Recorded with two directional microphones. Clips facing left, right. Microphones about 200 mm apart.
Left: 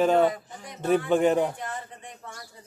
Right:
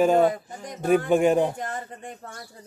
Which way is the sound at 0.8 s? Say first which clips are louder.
Right 2 dB; 10° right (ahead or behind).